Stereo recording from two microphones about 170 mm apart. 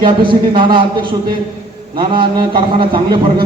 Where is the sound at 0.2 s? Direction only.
30° right (ahead or behind).